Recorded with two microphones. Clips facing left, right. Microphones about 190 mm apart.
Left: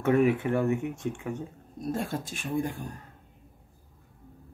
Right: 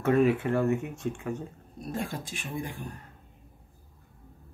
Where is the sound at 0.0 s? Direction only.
20° left (ahead or behind).